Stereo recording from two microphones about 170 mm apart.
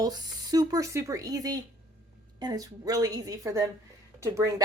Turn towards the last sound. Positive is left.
turn(degrees=-15)  # may be behind; listen again after turning